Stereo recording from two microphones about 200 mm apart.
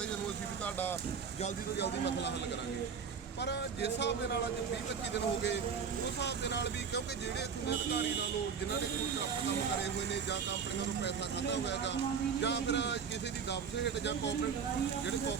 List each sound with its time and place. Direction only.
0.6 s speech: 10° left (ahead or behind)
1.8 s speech: 60° left (ahead or behind)
3.4 s speech: 60° left (ahead or behind)
5.1 s speech: 60° left (ahead or behind)
11.0 s speech: 60° left (ahead or behind)